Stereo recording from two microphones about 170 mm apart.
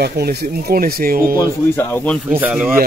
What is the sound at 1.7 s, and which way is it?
Speech, 10° left (ahead or behind).